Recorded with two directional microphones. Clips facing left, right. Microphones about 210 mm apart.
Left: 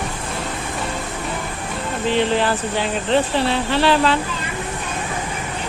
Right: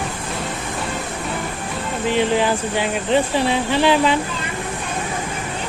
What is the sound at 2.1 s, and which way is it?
Speech, 10° right (ahead or behind).